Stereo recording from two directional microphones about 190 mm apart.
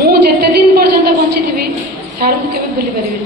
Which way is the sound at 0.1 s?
55° right (ahead or behind).